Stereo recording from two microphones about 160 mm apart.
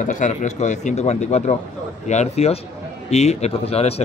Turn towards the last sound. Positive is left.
turn(degrees=40)  # may be behind; listen again after turning